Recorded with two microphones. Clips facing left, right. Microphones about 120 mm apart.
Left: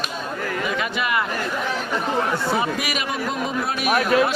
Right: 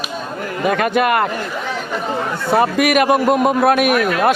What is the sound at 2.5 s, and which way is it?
A man's voice, 60° right (ahead or behind).